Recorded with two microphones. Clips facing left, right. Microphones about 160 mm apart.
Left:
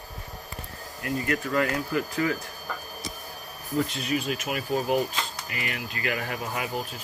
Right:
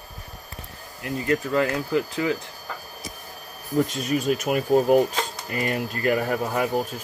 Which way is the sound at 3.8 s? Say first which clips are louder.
Right 5 dB; 45° right (ahead or behind).